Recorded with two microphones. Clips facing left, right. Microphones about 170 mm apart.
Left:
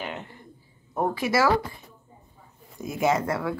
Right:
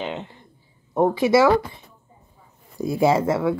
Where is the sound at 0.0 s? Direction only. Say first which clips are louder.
Right 5 dB; 20° right (ahead or behind).